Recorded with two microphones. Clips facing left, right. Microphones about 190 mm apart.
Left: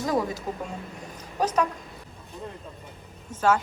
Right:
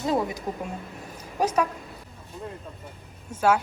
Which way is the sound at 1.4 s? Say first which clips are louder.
Right 1 dB; 10° right (ahead or behind).